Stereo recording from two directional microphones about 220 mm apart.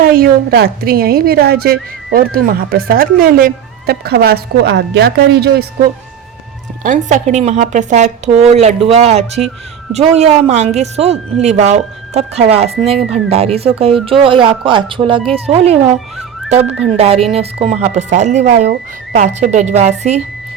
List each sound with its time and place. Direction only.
0.0 s a woman's voice: 40° right (ahead or behind)
6.8 s speech: 35° right (ahead or behind)
16.6 s speech: 5° right (ahead or behind)
17.3 s speech: 25° right (ahead or behind)